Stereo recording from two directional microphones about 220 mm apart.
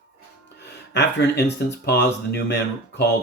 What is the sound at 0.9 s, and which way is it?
Speech, 50° left (ahead or behind).